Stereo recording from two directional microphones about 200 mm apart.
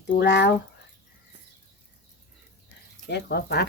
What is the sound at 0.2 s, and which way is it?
Speech, 60° left (ahead or behind).